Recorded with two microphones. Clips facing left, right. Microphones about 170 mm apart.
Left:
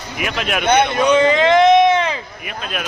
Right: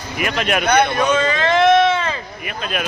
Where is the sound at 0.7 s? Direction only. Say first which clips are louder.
Left 3 dB; 20° left (ahead or behind).